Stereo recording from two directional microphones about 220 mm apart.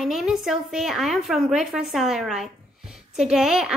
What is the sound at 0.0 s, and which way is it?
A woman's voice, centre (ahead or behind).